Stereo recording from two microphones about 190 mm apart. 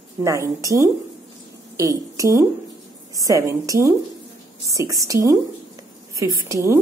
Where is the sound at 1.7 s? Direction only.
15° right (ahead or behind).